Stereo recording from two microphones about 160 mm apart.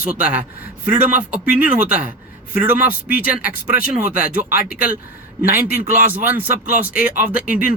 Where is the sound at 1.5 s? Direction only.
10° right (ahead or behind).